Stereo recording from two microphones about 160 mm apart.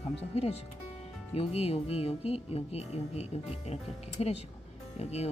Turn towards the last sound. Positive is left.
turn(degrees=40)  # may be behind; listen again after turning